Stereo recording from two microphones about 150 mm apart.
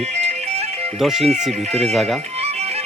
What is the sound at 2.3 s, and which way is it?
Music, 45° right (ahead or behind).